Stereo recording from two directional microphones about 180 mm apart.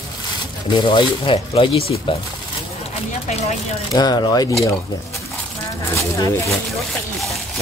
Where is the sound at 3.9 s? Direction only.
25° left (ahead or behind).